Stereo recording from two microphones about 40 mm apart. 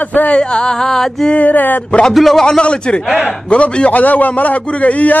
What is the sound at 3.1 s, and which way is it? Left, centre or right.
A man's voice, left.